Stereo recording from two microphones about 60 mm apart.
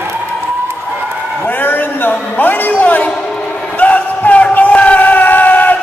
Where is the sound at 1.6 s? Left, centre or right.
Left.